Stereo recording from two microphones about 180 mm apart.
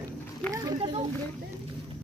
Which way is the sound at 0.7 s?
35° right (ahead or behind).